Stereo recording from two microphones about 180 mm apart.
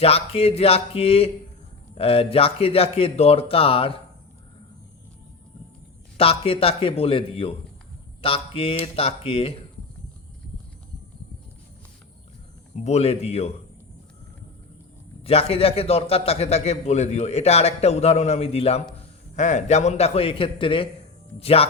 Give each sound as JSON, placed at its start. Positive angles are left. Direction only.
{"t": 0.0, "sound": "a man's voice", "side_deg": 35}
{"t": 6.1, "sound": "a man's voice", "side_deg": 30}
{"t": 12.7, "sound": "a man's voice", "side_deg": 40}
{"t": 15.2, "sound": "a man's voice", "side_deg": 35}